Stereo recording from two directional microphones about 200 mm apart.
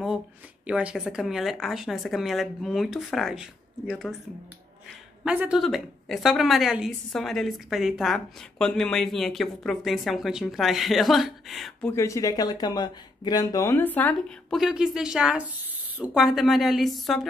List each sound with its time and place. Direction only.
0.7 s a woman's voice: 5° right (ahead or behind)
5.2 s a woman's voice: 5° right (ahead or behind)
11.9 s speech: 15° left (ahead or behind)
14.6 s a woman's voice: 5° right (ahead or behind)